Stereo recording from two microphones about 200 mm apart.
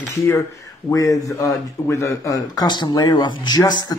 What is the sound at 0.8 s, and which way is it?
Speech, 15° left (ahead or behind).